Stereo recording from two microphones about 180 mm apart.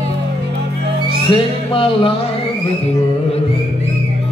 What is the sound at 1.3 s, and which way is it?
Music, 30° left (ahead or behind).